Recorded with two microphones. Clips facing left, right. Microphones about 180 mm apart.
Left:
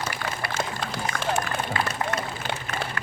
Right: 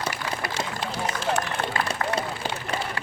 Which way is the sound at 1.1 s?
55° left (ahead or behind).